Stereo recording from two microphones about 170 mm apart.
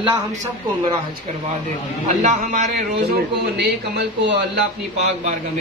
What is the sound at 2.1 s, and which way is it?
Speech, 45° right (ahead or behind).